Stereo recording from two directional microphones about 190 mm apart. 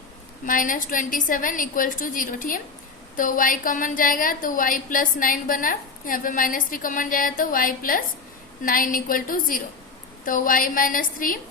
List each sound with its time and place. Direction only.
0.4 s a woman's voice: 45° left (ahead or behind)